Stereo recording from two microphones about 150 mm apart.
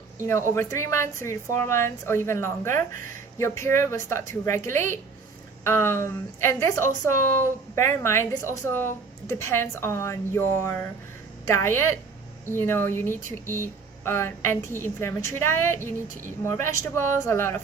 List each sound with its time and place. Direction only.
0.3 s a woman's voice: 20° left (ahead or behind)